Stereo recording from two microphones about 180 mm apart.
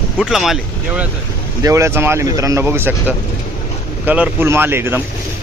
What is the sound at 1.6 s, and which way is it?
Speech, 15° right (ahead or behind).